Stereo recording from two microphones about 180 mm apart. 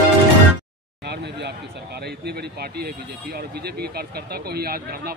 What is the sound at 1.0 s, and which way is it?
Speech, 70° right (ahead or behind).